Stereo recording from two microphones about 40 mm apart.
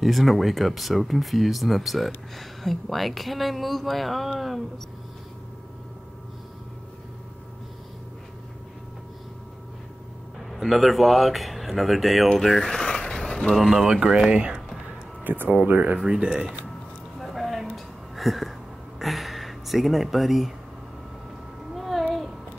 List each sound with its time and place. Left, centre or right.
0.0 s speech: centre
10.5 s speech: centre
12.4 s mechanisms: centre
13.1 s a sound: centre
13.6 s speech: centre
13.8 s speech: right
15.2 s speech: right
16.1 s speech: right
17.2 s a sound: centre
18.9 s speech: centre
21.7 s a sound: centre